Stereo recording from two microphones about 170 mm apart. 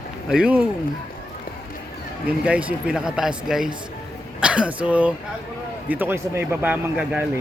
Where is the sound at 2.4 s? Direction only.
10° right (ahead or behind).